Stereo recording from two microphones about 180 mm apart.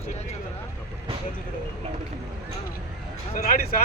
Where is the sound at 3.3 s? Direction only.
50° left (ahead or behind).